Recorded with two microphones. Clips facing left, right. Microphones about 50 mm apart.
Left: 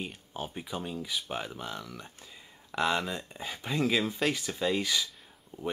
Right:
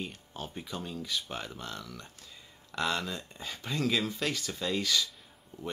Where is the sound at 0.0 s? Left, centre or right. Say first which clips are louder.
Left 2 dB; centre.